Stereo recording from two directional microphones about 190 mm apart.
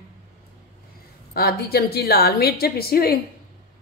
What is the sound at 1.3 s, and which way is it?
Speech, 55° left (ahead or behind).